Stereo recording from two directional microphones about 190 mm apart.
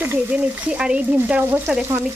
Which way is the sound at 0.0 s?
10° right (ahead or behind).